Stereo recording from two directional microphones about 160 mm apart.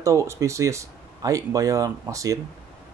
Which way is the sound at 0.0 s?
20° right (ahead or behind).